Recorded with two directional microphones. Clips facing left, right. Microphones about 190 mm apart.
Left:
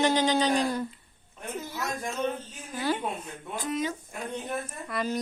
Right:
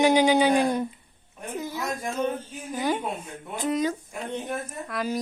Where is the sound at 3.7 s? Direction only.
40° right (ahead or behind).